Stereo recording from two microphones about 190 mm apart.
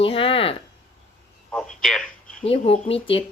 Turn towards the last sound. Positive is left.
turn(degrees=30)  # may be behind; listen again after turning